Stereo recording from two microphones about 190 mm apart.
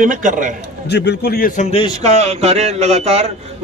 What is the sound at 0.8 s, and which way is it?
A man's voice, 60° left (ahead or behind).